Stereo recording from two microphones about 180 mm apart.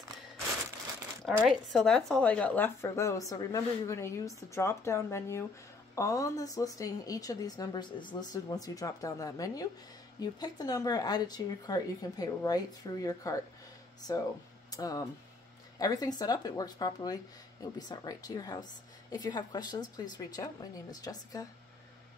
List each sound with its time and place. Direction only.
1.2 s speech: centre (ahead or behind); by 21.5 s 20° left (ahead or behind)